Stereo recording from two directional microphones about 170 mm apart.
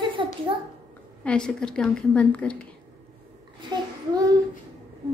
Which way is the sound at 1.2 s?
5° left (ahead or behind).